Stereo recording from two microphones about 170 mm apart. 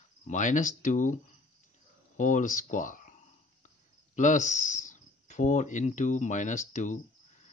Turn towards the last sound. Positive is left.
turn(degrees=45)  # may be behind; listen again after turning